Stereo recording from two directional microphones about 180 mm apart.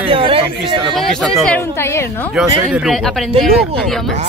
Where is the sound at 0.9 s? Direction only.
Centre (ahead or behind).